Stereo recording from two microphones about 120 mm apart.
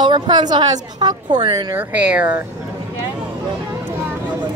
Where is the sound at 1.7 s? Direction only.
10° right (ahead or behind).